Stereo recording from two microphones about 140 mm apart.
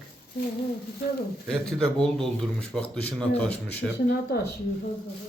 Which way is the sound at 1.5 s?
5° left (ahead or behind).